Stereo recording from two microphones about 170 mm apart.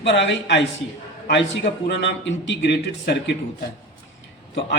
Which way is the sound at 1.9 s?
90° left.